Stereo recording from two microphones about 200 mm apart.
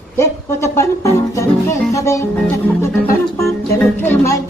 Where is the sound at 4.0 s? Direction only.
10° left (ahead or behind).